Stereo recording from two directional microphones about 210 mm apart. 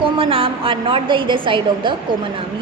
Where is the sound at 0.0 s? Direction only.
25° right (ahead or behind).